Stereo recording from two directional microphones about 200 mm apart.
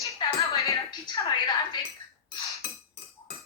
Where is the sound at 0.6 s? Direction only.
20° left (ahead or behind).